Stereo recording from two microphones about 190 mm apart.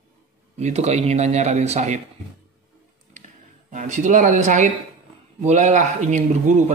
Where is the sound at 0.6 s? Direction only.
35° right (ahead or behind).